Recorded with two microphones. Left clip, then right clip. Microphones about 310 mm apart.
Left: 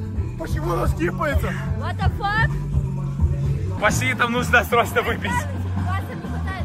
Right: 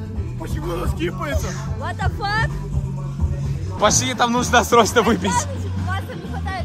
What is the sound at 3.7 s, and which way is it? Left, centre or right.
Speech, centre.